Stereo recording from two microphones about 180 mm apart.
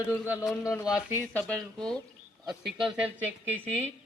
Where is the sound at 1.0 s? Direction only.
10° left (ahead or behind).